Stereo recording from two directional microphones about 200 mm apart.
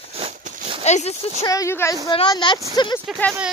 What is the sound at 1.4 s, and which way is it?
Speech, 15° left (ahead or behind).